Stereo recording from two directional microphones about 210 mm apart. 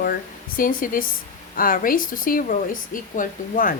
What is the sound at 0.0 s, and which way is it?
Speech, 45° left (ahead or behind).